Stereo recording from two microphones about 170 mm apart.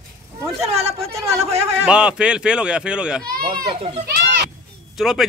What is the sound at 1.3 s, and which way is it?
Speech, 35° right (ahead or behind).